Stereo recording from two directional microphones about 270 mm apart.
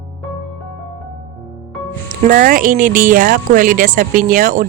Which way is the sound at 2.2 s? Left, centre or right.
Right.